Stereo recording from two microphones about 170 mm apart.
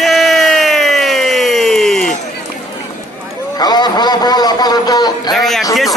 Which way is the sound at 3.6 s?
25° left (ahead or behind).